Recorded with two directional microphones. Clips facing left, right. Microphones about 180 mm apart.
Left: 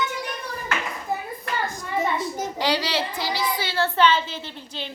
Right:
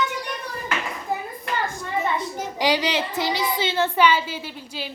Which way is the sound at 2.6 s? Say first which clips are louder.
Right 3 dB; 20° right (ahead or behind).